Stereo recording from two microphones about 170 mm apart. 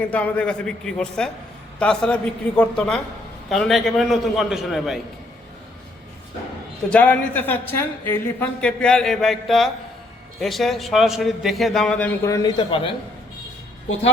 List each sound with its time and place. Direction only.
0.1 s a man's voice: 10° left (ahead or behind)
6.9 s a woman's voice: 10° left (ahead or behind)
12.2 s speech: 20° left (ahead or behind)